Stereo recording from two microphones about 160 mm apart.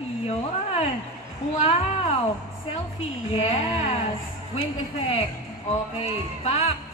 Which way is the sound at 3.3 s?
40° left (ahead or behind).